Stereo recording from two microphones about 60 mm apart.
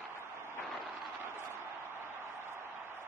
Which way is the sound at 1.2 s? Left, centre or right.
Right.